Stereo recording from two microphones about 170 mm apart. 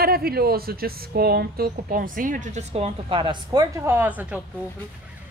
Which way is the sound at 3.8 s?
15° right (ahead or behind).